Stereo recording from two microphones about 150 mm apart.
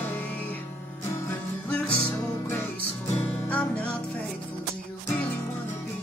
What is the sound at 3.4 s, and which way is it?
Music, 10° left (ahead or behind).